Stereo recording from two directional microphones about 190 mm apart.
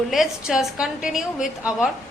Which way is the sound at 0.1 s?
Centre (ahead or behind).